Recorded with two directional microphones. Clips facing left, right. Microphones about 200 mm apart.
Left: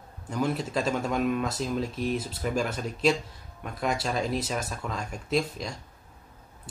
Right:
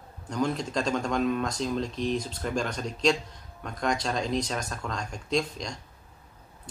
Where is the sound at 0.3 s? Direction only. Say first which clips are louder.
Even; 5° left (ahead or behind).